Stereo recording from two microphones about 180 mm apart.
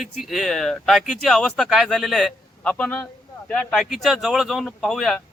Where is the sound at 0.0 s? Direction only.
Centre (ahead or behind).